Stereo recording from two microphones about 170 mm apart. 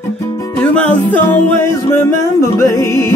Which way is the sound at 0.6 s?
10° left (ahead or behind).